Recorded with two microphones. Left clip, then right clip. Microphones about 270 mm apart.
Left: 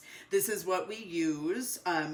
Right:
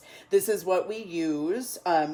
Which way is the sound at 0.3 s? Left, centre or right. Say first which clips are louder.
Right 7 dB; right.